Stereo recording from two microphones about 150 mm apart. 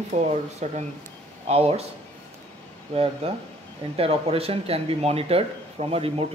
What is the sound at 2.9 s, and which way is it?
Speech, 40° right (ahead or behind).